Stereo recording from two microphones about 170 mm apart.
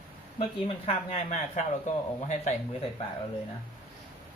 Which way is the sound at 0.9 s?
45° left (ahead or behind).